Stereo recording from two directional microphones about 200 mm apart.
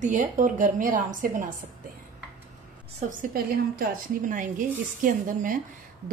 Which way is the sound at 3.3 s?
45° right (ahead or behind).